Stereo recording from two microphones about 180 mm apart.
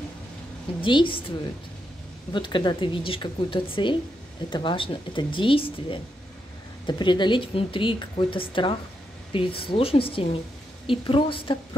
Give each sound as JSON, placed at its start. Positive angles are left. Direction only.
{"t": 0.7, "sound": "speech", "side_deg": 25}
{"t": 2.3, "sound": "speech", "side_deg": 25}